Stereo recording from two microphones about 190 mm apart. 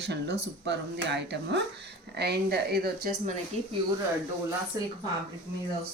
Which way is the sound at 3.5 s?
35° right (ahead or behind).